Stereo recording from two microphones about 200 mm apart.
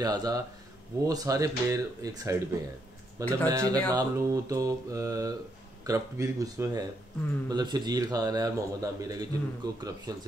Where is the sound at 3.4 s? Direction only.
20° right (ahead or behind).